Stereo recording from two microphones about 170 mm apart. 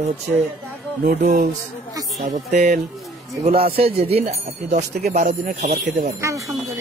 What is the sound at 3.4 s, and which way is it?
Speech, 40° right (ahead or behind).